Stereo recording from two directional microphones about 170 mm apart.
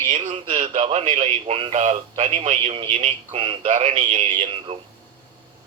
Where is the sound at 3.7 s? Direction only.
40° right (ahead or behind).